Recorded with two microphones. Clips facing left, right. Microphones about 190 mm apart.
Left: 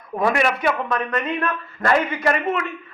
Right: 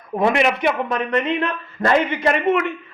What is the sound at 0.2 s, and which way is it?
A man's voice, 25° right (ahead or behind).